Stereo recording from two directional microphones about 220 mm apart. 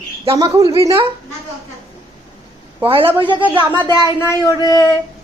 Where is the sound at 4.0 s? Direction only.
15° left (ahead or behind).